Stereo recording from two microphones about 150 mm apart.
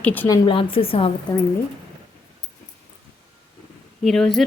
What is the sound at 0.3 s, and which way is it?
Speech, 35° left (ahead or behind).